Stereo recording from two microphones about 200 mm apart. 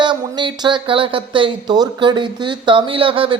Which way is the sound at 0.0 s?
25° right (ahead or behind).